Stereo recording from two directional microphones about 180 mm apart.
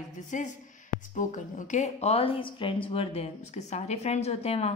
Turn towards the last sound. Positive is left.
turn(degrees=35)  # may be behind; listen again after turning